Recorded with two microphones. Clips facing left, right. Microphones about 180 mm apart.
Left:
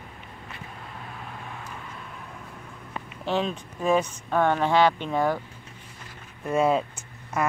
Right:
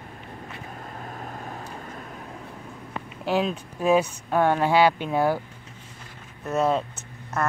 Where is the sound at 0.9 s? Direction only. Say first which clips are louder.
Right 4 dB; 40° right (ahead or behind).